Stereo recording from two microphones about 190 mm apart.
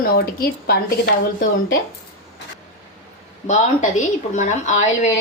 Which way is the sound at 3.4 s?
40° left (ahead or behind).